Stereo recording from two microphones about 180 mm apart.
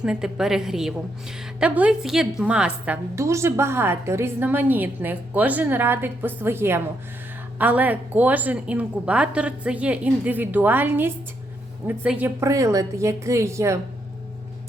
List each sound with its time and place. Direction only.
0.0 s a woman's voice: 5° right (ahead or behind)